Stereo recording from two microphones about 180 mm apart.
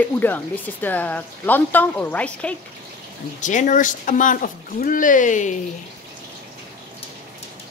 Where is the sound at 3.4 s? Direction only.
45° left (ahead or behind).